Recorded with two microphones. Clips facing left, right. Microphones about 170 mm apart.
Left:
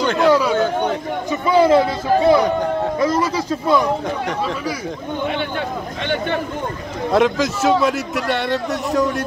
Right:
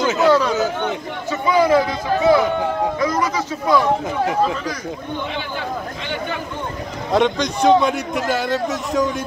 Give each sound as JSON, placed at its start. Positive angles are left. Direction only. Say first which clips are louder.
{"t": 0.0, "sound": "speech", "louder": "even", "side_deg": -5}
{"t": 0.3, "sound": "speech", "louder": "left 1 dB", "side_deg": 10}
{"t": 1.5, "sound": "speech", "louder": "left 2 dB", "side_deg": 30}
{"t": 7.1, "sound": "a man's voice", "louder": "left 2 dB", "side_deg": 0}